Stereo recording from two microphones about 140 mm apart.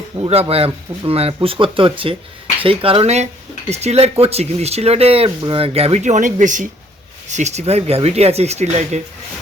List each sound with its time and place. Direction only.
0.2 s speech: 45° right (ahead or behind)